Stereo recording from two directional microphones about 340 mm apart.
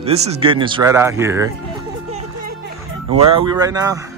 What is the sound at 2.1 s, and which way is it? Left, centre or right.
Music, centre.